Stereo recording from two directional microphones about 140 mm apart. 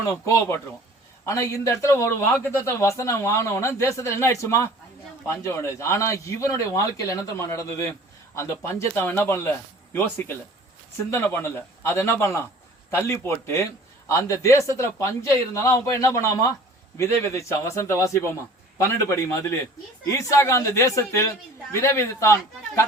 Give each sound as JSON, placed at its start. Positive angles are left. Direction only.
{"t": 0.1, "sound": "speech", "side_deg": 20}
{"t": 11.1, "sound": "speech", "side_deg": 20}